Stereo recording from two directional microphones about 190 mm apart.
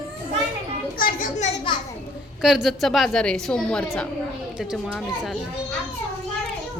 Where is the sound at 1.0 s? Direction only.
45° left (ahead or behind).